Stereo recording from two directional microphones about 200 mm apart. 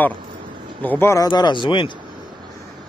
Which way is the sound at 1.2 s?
25° left (ahead or behind).